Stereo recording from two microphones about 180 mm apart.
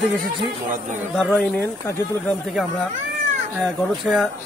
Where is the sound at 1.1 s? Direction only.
5° left (ahead or behind).